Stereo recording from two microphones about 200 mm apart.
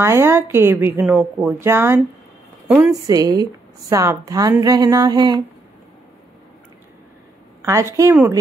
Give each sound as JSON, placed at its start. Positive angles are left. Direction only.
{"t": 0.0, "sound": "a woman's voice", "side_deg": -10}
{"t": 7.6, "sound": "a woman's voice", "side_deg": -15}